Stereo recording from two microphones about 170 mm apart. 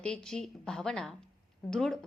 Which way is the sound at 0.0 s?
5° left (ahead or behind).